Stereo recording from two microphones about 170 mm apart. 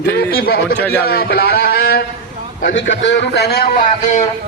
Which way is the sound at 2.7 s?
90° left.